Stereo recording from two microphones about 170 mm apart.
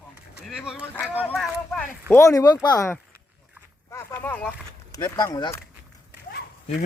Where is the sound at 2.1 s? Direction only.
20° left (ahead or behind).